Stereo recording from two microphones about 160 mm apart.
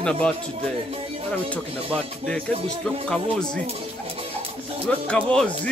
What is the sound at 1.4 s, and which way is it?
Speech, 5° left (ahead or behind).